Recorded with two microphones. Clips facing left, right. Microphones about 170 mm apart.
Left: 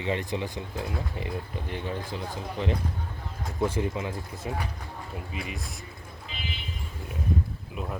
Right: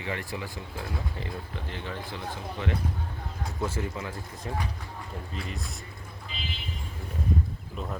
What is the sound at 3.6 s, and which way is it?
Speech, 15° left (ahead or behind).